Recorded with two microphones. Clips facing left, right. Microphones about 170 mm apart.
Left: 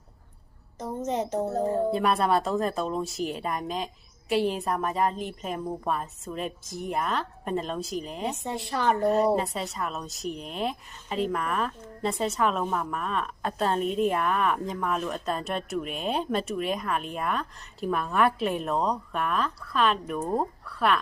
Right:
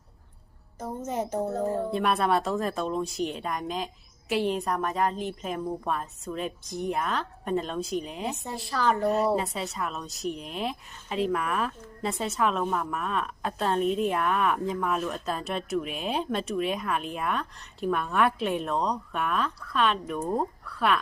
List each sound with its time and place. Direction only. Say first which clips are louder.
1.9 s speech: left 1 dB; centre (ahead or behind)
8.4 s a woman's voice: even; 25° left (ahead or behind)
9.0 s speech: left 2 dB; centre (ahead or behind)